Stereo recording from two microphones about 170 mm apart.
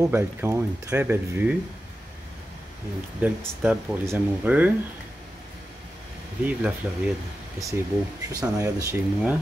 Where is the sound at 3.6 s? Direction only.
10° right (ahead or behind).